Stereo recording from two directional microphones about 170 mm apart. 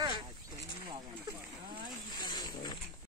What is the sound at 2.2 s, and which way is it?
Wild animals, 25° left (ahead or behind).